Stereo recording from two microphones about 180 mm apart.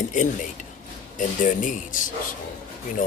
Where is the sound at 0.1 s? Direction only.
45° left (ahead or behind).